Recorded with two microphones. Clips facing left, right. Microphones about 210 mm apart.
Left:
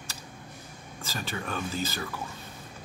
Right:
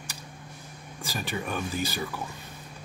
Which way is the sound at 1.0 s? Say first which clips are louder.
Right 3 dB; 15° right (ahead or behind).